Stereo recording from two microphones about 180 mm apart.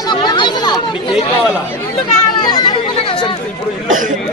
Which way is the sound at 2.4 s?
25° left (ahead or behind).